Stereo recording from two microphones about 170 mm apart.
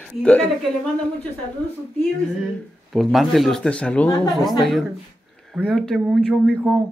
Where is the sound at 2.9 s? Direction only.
Centre (ahead or behind).